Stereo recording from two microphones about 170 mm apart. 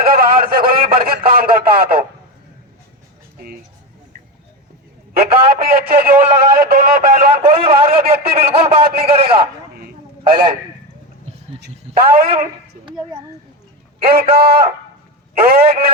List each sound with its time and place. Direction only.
0.0 s a sound: 60° right (ahead or behind)
5.1 s a man's voice: 65° right (ahead or behind)
7.5 s a man's voice: 35° right (ahead or behind)
8.1 s a man's voice: 60° right (ahead or behind)
8.5 s a man's voice: 35° right (ahead or behind)
8.8 s a man's voice: 65° right (ahead or behind)
9.0 s a man's voice: 35° right (ahead or behind)
9.3 s a sound: 65° right (ahead or behind)
11.6 s speech: 60° right (ahead or behind)
14.0 s a man's voice: 60° right (ahead or behind)